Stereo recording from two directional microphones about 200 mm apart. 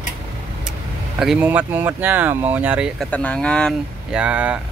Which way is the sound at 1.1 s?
5° right (ahead or behind).